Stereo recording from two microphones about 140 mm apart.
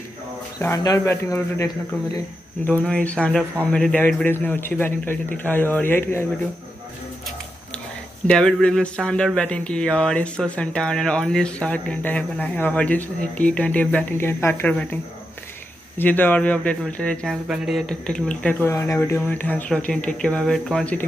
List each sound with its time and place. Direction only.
0.6 s speech: 20° left (ahead or behind)
8.3 s speech: 5° left (ahead or behind)
16.0 s speech: 15° left (ahead or behind)